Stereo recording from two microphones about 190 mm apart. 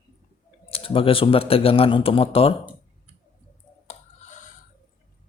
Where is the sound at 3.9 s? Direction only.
40° left (ahead or behind).